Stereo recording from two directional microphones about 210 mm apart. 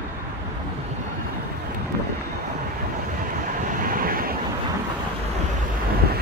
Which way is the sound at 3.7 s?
40° right (ahead or behind).